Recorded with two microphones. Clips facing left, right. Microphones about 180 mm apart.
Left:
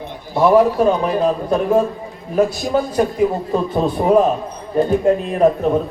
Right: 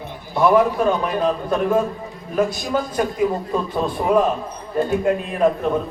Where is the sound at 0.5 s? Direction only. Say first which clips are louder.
Left 5 dB; 30° left (ahead or behind).